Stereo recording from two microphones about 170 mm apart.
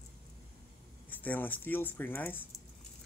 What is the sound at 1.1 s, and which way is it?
Speech, 10° left (ahead or behind).